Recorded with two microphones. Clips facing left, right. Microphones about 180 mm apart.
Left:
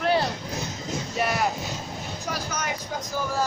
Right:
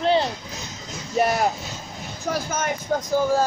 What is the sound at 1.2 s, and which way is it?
Speech, 55° right (ahead or behind).